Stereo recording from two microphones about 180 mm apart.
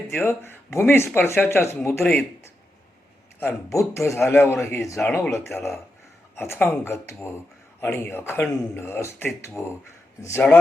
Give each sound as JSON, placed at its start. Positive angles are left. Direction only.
{"t": 0.1, "sound": "speech", "side_deg": 10}
{"t": 3.4, "sound": "a man's voice", "side_deg": 15}